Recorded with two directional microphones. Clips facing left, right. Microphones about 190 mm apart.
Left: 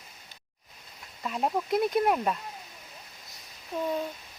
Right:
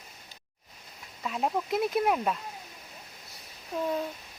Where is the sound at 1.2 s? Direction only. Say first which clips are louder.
Left 1 dB; centre (ahead or behind).